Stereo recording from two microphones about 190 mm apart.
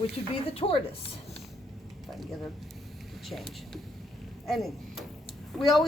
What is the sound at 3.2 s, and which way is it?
Speech, centre (ahead or behind).